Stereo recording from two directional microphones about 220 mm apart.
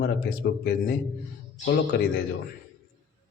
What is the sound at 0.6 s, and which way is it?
A man's voice, 45° left (ahead or behind).